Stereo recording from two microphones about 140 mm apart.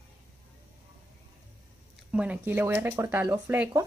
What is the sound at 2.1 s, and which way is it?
Speech, 10° right (ahead or behind).